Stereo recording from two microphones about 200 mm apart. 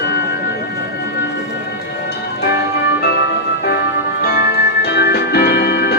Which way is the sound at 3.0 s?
50° left (ahead or behind).